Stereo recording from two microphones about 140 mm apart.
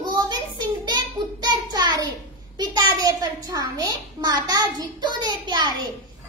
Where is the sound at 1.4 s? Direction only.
30° right (ahead or behind).